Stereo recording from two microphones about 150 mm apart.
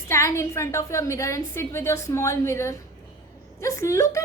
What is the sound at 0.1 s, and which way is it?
A woman's voice, 20° left (ahead or behind).